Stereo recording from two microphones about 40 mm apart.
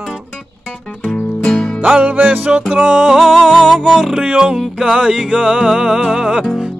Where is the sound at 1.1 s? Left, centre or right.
Left.